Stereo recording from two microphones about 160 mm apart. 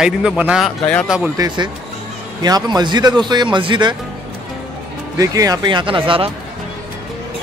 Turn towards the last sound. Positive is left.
turn(degrees=-35)  # may be behind; listen again after turning